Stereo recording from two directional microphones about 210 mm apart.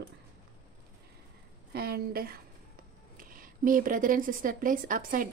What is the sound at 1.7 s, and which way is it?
A woman's voice, 50° right (ahead or behind).